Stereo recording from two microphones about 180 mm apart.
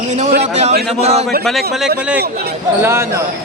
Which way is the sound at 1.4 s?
Centre (ahead or behind).